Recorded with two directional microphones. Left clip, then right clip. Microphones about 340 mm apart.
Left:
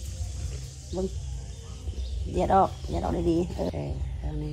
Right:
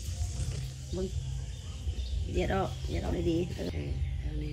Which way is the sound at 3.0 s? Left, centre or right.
Left.